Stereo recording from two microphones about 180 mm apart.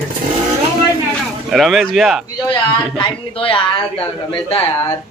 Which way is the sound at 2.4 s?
25° left (ahead or behind).